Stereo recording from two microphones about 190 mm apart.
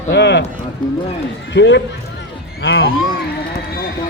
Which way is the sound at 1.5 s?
70° left (ahead or behind).